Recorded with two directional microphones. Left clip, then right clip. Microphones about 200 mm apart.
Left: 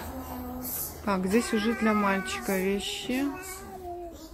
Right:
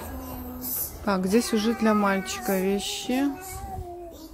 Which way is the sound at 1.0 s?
10° right (ahead or behind).